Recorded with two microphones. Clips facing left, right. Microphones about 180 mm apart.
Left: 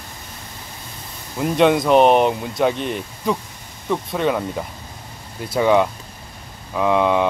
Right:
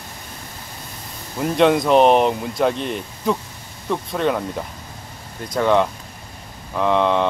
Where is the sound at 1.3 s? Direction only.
Centre (ahead or behind).